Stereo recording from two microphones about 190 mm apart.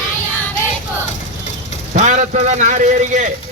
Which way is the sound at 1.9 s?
40° right (ahead or behind).